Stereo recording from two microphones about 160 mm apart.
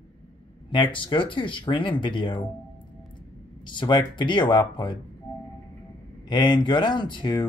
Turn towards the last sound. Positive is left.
turn(degrees=30)  # may be behind; listen again after turning